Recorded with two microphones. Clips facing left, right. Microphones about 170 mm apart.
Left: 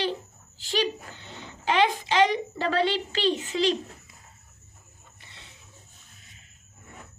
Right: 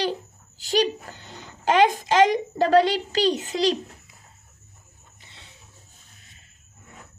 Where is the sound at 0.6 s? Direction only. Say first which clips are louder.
Right 5 dB; 40° right (ahead or behind).